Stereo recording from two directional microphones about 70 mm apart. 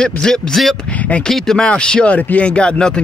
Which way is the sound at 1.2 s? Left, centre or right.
Centre.